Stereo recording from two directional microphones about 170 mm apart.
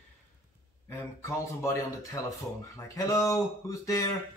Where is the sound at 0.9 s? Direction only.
15° left (ahead or behind).